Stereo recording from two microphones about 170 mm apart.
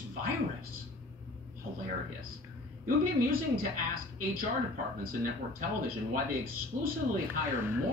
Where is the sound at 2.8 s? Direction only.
55° right (ahead or behind).